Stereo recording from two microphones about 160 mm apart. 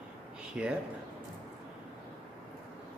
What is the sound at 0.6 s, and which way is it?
Speech, 5° right (ahead or behind).